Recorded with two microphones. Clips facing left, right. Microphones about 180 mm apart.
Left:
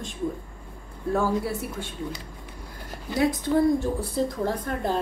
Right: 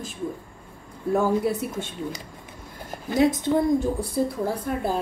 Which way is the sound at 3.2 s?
20° right (ahead or behind).